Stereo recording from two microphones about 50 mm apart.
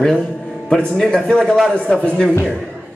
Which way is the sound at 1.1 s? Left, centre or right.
Centre.